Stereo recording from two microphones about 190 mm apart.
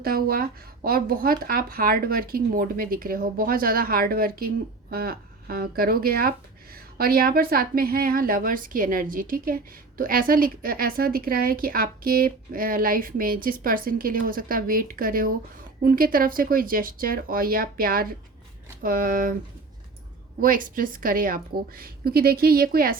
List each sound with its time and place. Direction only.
0.0 s speech: 50° right (ahead or behind)
20.4 s speech: 45° right (ahead or behind)